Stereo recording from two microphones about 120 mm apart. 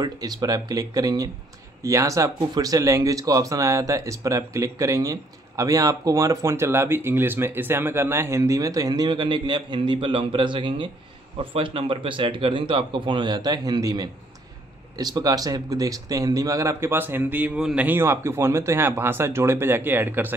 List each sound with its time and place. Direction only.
0.0 s a man's voice: 30° right (ahead or behind); by 20.3 s 15° right (ahead or behind)